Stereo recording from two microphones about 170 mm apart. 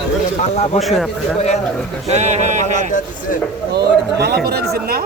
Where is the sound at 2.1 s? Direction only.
40° right (ahead or behind).